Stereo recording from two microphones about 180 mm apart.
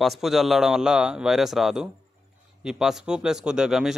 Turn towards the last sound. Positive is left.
turn(degrees=0)  # may be behind; listen again after turning